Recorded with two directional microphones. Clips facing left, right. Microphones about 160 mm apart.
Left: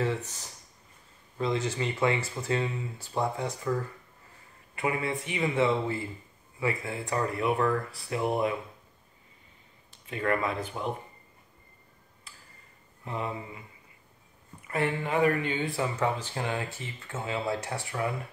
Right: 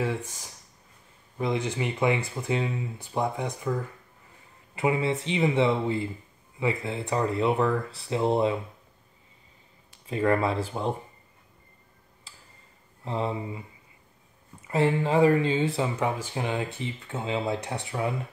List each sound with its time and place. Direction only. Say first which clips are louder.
0.0 s speech: right 1 dB; 10° right (ahead or behind)
4.7 s speech: right 5 dB; 20° right (ahead or behind)
10.0 s speech: right 5 dB; 30° right (ahead or behind)
13.0 s speech: right 5 dB; 30° right (ahead or behind)
14.7 s speech: right 5 dB; 25° right (ahead or behind)